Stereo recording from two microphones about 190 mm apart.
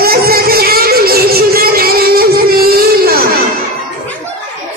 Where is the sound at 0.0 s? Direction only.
55° right (ahead or behind).